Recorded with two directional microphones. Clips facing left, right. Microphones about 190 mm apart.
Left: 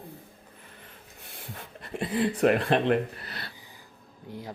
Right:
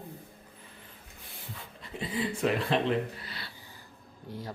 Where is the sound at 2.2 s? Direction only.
75° left (ahead or behind); by 2.9 s 60° left (ahead or behind).